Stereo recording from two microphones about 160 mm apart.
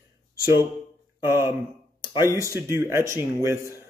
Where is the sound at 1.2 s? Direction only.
15° right (ahead or behind).